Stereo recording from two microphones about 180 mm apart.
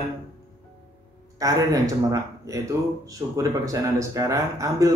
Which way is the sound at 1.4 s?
20° right (ahead or behind).